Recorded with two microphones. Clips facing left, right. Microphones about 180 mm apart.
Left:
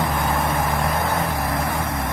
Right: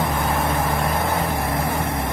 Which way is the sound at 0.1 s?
Centre (ahead or behind).